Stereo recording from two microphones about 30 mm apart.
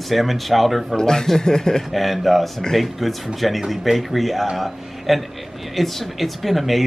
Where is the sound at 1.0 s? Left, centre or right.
Left.